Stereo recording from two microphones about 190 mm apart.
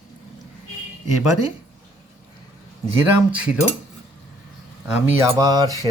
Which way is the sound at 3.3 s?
5° right (ahead or behind).